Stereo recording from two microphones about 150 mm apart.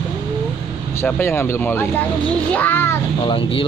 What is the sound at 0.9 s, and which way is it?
Speech, 15° left (ahead or behind).